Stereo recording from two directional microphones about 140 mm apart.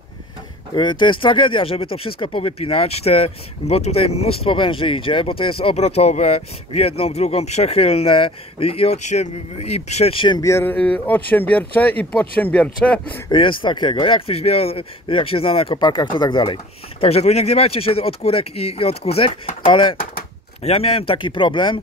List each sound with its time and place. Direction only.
0.7 s speech: 35° left (ahead or behind)
10.4 s speech: 15° left (ahead or behind)
13.3 s speech: 35° left (ahead or behind)
17.0 s speech: 45° left (ahead or behind)